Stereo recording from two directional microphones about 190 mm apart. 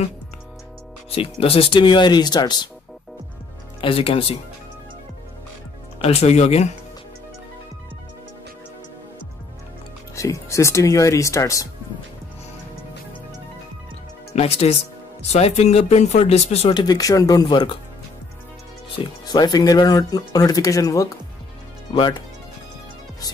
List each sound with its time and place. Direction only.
1.4 s speech: 30° left (ahead or behind)
3.8 s speech: 30° left (ahead or behind)
5.9 s speech: 30° left (ahead or behind)
10.1 s speech: 15° left (ahead or behind)
14.3 s speech: 30° left (ahead or behind)
18.9 s speech: 20° left (ahead or behind)